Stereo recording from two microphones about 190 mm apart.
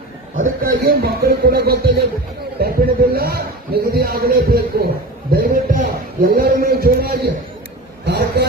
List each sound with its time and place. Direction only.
0.6 s a man's voice: 50° right (ahead or behind)